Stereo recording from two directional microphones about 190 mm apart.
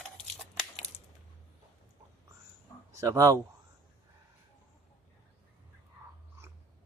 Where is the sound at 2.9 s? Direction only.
15° right (ahead or behind).